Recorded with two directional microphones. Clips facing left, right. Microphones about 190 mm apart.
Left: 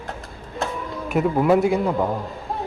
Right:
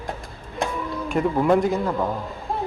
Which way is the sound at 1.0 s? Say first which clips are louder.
Left 2 dB; 5° left (ahead or behind).